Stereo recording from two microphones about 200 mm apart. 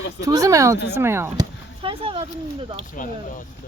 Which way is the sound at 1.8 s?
25° right (ahead or behind).